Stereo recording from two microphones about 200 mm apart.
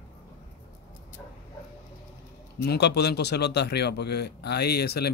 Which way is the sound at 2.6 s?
55° left (ahead or behind).